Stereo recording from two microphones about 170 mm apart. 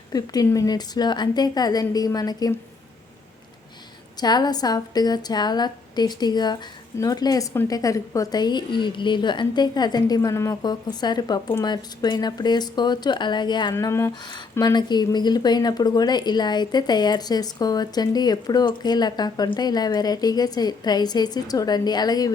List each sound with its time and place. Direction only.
0.1 s speech: 20° left (ahead or behind)
4.2 s speech: 25° left (ahead or behind)
13.7 s speech: 15° left (ahead or behind)